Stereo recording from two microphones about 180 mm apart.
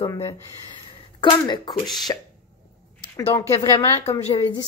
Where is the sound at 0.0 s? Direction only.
25° left (ahead or behind).